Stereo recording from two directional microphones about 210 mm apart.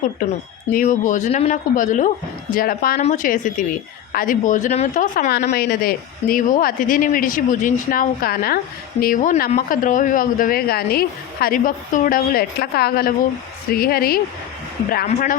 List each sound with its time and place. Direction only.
0.7 s a woman's voice: 40° left (ahead or behind)